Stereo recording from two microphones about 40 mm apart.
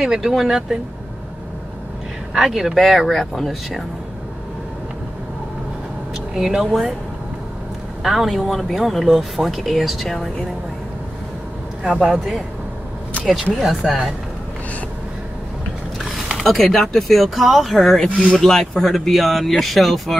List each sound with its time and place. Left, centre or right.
0.0 s speech: centre
2.3 s speech: centre
6.1 s speech: centre
8.0 s speech: centre
11.9 s speech: centre
16.3 s a sound: centre
16.9 s speech: centre
18.0 s speech: left
18.4 s speech: centre